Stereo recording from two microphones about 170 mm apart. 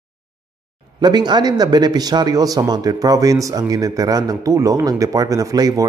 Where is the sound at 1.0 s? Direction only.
25° right (ahead or behind).